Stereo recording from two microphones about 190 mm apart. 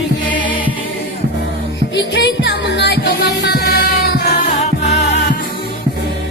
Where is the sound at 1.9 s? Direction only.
70° left (ahead or behind).